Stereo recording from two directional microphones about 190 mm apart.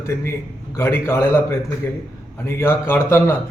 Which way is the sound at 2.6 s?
10° left (ahead or behind).